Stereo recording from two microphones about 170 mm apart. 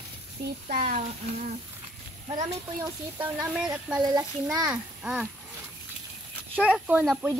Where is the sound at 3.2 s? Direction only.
10° right (ahead or behind).